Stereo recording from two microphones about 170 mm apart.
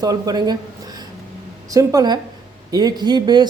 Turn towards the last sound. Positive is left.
turn(degrees=-25)  # may be behind; listen again after turning